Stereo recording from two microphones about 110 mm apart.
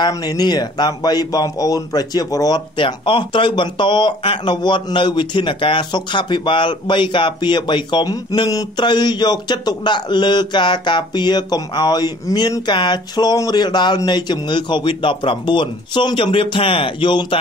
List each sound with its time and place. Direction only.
0.1 s a man's voice: 35° left (ahead or behind)
2.8 s speech: 50° left (ahead or behind)